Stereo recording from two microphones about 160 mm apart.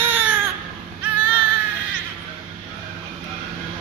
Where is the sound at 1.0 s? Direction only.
10° right (ahead or behind).